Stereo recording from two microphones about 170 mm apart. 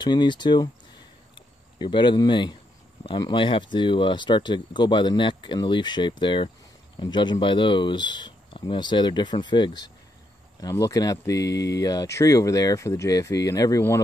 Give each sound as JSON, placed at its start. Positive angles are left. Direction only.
{"t": 0.0, "sound": "speech", "side_deg": 25}
{"t": 1.8, "sound": "speech", "side_deg": 30}